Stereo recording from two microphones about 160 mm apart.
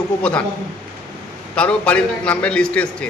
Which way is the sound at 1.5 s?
5° left (ahead or behind).